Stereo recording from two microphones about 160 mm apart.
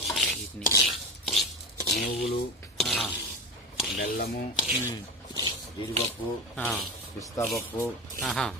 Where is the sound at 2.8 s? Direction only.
Centre (ahead or behind).